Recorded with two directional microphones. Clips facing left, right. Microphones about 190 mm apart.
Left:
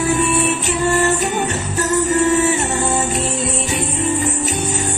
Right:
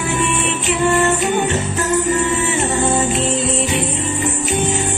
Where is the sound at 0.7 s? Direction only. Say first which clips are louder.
Right 4 dB; 40° left (ahead or behind).